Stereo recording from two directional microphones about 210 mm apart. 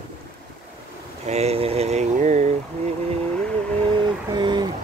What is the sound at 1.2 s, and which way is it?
Vehicle, 30° right (ahead or behind).